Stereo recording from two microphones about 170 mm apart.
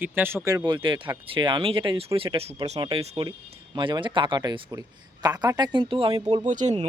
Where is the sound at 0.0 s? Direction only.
10° right (ahead or behind); by 6.2 s 30° right (ahead or behind).